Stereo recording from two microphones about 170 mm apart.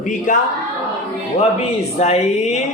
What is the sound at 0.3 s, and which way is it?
Speech, 50° left (ahead or behind).